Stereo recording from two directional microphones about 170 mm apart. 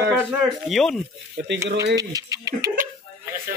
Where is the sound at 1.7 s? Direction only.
85° right.